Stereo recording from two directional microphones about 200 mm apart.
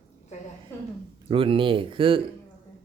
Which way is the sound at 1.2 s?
25° right (ahead or behind).